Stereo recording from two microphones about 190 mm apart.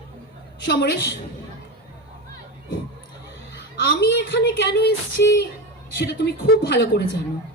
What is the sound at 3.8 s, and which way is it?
A woman's voice, 60° left (ahead or behind).